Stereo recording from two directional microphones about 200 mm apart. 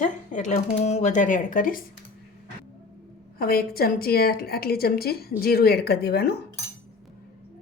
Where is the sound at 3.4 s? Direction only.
50° left (ahead or behind).